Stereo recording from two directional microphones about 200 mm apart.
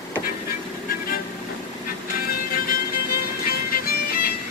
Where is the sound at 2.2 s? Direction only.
50° left (ahead or behind).